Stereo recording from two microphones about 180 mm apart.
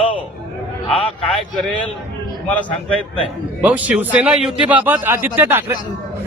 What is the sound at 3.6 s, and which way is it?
Speech, 10° right (ahead or behind).